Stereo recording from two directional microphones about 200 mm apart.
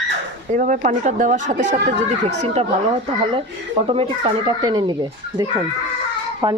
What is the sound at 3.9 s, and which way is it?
Speech, 25° right (ahead or behind).